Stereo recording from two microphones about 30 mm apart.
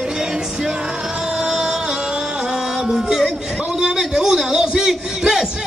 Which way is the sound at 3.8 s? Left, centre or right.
Right.